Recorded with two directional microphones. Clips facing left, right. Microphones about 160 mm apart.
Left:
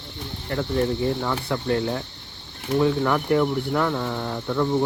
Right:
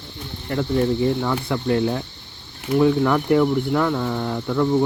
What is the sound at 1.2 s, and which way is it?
Speech, centre (ahead or behind).